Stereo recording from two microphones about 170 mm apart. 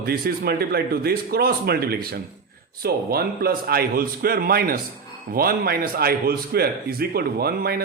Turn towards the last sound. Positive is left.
turn(degrees=-65)  # may be behind; listen again after turning